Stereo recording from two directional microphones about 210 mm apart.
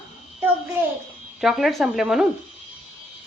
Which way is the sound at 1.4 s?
Centre (ahead or behind).